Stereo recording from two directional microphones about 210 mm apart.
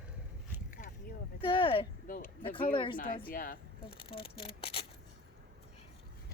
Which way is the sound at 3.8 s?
25° left (ahead or behind).